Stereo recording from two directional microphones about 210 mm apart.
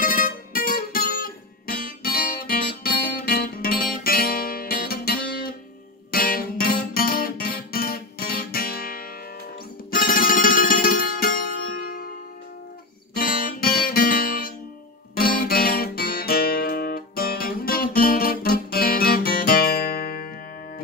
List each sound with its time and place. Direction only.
0.0 s music: 40° left (ahead or behind)
13.1 s guitar: 45° left (ahead or behind)
15.1 s music: 45° left (ahead or behind)